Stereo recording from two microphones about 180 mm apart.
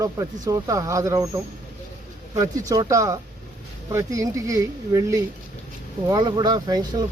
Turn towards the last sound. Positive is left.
turn(degrees=-20)  # may be behind; listen again after turning